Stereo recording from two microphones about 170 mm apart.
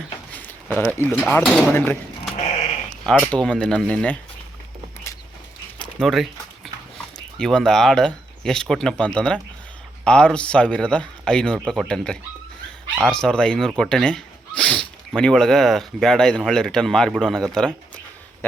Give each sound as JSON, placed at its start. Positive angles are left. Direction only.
{"t": 0.3, "sound": "a sound", "side_deg": 10}
{"t": 1.5, "sound": "speech", "side_deg": -10}
{"t": 1.7, "sound": "speech", "side_deg": 10}
{"t": 2.3, "sound": "sheep", "side_deg": 40}
{"t": 3.1, "sound": "speech", "side_deg": 5}
{"t": 6.0, "sound": "speech", "side_deg": 0}
{"t": 7.3, "sound": "speech", "side_deg": 5}